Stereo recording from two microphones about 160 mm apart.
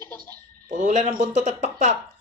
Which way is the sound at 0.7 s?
50° right (ahead or behind).